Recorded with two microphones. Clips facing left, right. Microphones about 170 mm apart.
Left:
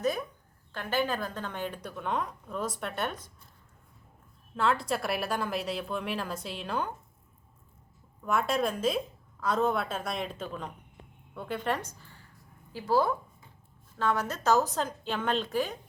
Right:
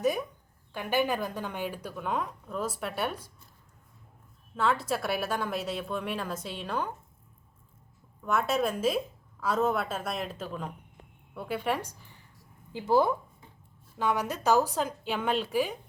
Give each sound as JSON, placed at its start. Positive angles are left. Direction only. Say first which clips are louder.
{"t": 0.0, "sound": "a woman's voice", "louder": "right 2 dB", "side_deg": -15}
{"t": 4.5, "sound": "a woman's voice", "louder": "even", "side_deg": 0}
{"t": 8.2, "sound": "a woman's voice", "louder": "right 1 dB", "side_deg": 0}